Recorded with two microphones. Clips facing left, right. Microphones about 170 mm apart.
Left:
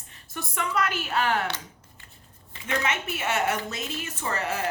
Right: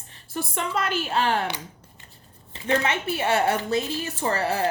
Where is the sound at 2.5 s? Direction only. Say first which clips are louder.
Right 5 dB; 30° right (ahead or behind).